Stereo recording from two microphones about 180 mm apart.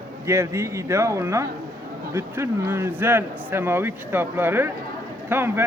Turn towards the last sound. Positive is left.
turn(degrees=-10)  # may be behind; listen again after turning